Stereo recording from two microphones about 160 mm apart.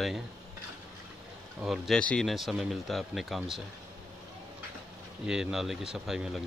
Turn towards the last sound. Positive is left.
turn(degrees=-5)  # may be behind; listen again after turning